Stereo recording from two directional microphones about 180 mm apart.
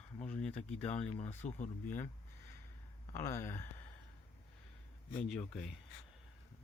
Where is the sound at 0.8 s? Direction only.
35° left (ahead or behind).